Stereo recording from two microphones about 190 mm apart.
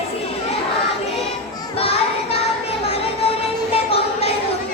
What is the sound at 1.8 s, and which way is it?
Child singing, 30° left (ahead or behind).